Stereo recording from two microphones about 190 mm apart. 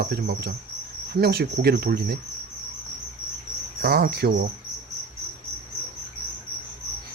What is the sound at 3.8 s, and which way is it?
Speech, 55° right (ahead or behind).